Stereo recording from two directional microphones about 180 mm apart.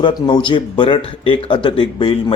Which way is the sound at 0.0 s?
25° left (ahead or behind).